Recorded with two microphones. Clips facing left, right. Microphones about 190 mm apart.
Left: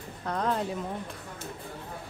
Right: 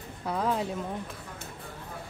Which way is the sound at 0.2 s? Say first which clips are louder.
Even; 5° right (ahead or behind).